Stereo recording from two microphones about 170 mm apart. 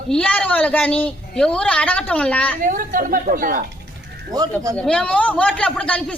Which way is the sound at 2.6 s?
55° right (ahead or behind).